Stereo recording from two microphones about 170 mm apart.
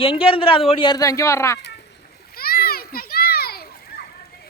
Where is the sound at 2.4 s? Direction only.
65° left (ahead or behind).